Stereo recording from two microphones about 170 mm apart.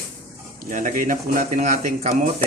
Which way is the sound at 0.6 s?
50° right (ahead or behind).